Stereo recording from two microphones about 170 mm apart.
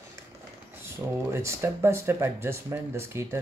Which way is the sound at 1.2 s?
15° right (ahead or behind).